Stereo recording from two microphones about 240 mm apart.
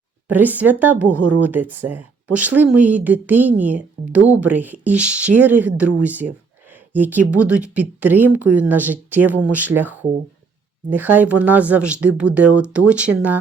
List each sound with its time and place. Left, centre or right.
0.3 s speech: centre
1.2 s speech: right
1.5 s speech: centre